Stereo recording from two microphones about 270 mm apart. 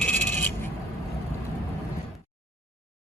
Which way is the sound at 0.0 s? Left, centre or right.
Centre.